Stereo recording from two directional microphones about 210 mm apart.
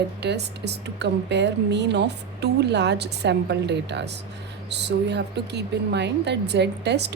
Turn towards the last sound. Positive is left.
turn(degrees=-55)  # may be behind; listen again after turning